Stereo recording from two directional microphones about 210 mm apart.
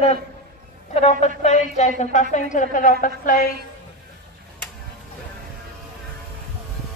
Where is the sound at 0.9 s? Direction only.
30° left (ahead or behind).